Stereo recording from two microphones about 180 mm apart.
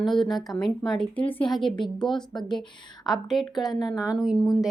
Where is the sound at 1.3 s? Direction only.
30° left (ahead or behind).